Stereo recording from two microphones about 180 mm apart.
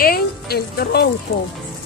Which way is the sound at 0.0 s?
60° left (ahead or behind).